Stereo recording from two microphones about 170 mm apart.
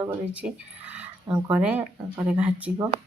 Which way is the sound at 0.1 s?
5° right (ahead or behind).